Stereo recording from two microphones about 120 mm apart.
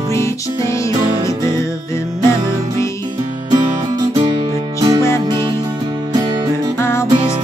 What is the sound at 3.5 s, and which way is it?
Music, 35° right (ahead or behind).